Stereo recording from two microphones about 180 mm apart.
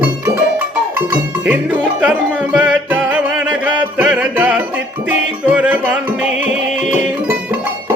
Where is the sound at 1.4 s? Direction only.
5° right (ahead or behind).